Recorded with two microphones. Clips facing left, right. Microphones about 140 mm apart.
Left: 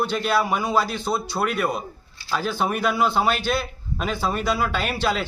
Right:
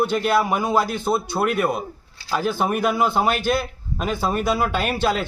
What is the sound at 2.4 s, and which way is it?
A man's voice, 50° right (ahead or behind).